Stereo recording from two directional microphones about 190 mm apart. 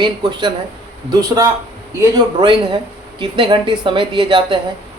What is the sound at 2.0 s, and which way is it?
Speech, 20° right (ahead or behind).